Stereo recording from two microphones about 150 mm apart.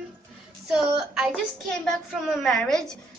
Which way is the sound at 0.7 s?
Centre (ahead or behind).